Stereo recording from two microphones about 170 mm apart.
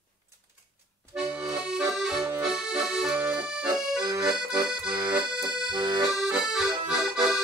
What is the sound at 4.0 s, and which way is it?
Accordion, 20° right (ahead or behind).